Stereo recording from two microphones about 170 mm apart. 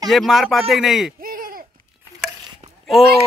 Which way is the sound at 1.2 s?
55° right (ahead or behind).